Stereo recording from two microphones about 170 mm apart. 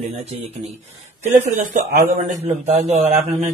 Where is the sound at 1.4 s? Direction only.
45° right (ahead or behind).